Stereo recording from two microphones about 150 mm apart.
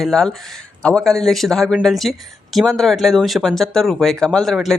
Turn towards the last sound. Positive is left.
turn(degrees=0)  # may be behind; listen again after turning